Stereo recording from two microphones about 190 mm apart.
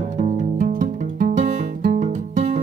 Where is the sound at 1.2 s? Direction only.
40° right (ahead or behind).